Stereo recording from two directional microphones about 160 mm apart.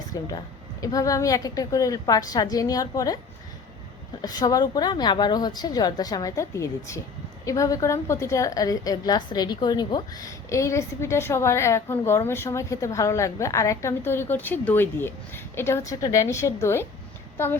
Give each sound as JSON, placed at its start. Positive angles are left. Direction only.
{"t": 0.1, "sound": "a woman's voice", "side_deg": 20}
{"t": 4.2, "sound": "a woman's voice", "side_deg": 25}